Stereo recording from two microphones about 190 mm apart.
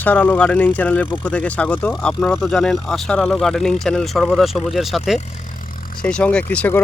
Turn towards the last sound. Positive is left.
turn(degrees=10)  # may be behind; listen again after turning